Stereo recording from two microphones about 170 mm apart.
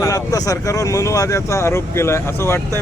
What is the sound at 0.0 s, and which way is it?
Speech, 20° left (ahead or behind).